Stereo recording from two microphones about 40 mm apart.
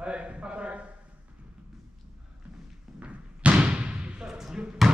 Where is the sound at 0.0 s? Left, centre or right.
Right.